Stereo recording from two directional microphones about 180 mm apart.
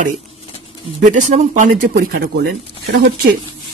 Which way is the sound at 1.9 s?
60° right (ahead or behind).